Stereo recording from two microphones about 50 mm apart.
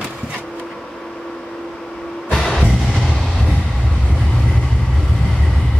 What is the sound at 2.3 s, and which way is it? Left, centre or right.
Music, centre.